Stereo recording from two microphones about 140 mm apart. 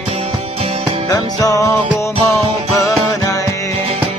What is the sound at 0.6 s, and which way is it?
Music, 45° right (ahead or behind).